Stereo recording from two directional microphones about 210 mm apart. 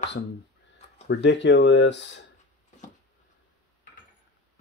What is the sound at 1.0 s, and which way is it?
Speech, 55° left (ahead or behind).